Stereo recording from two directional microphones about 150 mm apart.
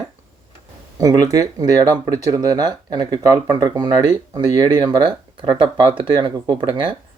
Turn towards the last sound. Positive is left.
turn(degrees=-35)  # may be behind; listen again after turning